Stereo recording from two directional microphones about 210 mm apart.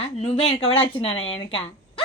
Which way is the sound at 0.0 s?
30° left (ahead or behind).